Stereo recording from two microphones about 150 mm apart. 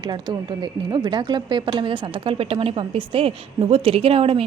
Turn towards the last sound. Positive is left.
turn(degrees=-40)  # may be behind; listen again after turning